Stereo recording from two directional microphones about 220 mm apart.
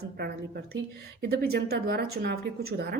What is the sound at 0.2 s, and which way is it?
A woman's voice, 45° right (ahead or behind).